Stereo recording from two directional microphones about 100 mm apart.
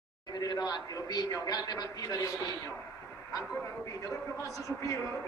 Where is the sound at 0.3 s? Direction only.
40° left (ahead or behind).